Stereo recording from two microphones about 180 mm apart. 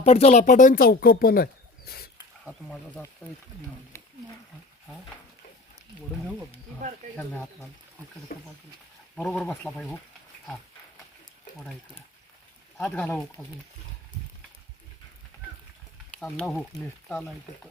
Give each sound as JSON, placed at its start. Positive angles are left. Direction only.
{"t": 0.0, "sound": "speech", "side_deg": 35}
{"t": 2.4, "sound": "speech", "side_deg": 0}
{"t": 3.9, "sound": "wild animals", "side_deg": 15}
{"t": 8.3, "sound": "speech", "side_deg": 55}
{"t": 9.1, "sound": "speech", "side_deg": 5}
{"t": 12.7, "sound": "speech", "side_deg": 5}
{"t": 16.1, "sound": "speech", "side_deg": 5}